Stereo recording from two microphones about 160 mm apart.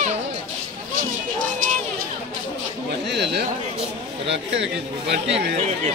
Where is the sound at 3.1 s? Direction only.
90° right.